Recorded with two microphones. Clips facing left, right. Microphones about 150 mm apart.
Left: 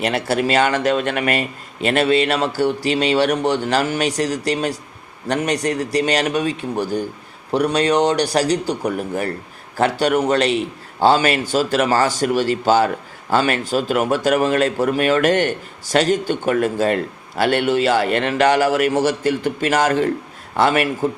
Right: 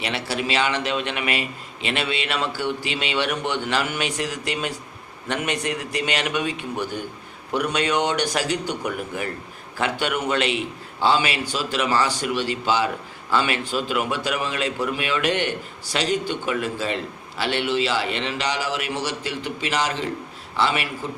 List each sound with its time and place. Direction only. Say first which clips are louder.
0.0 s a man's voice: left 7 dB; 45° left (ahead or behind)